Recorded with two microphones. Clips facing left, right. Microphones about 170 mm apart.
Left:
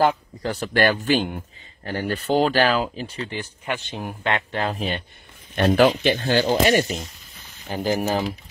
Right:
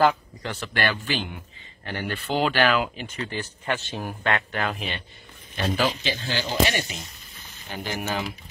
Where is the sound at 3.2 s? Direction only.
15° left (ahead or behind).